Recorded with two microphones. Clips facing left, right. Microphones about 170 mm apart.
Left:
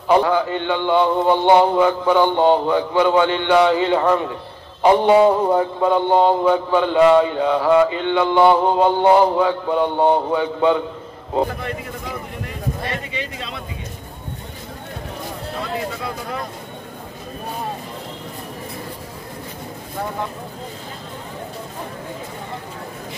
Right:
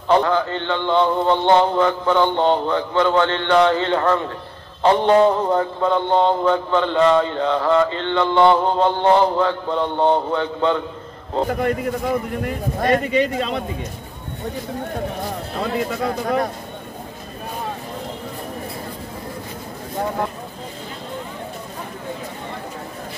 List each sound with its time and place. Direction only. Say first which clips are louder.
0.1 s mantra: left 1 dB; 10° left (ahead or behind)
12.8 s a man's voice: right 10 dB; 45° right (ahead or behind)